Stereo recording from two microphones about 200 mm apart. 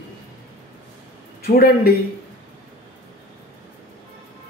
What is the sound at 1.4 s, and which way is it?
Speech, 50° left (ahead or behind).